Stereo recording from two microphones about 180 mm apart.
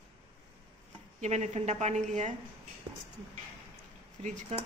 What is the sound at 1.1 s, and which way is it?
A woman's voice, 40° right (ahead or behind).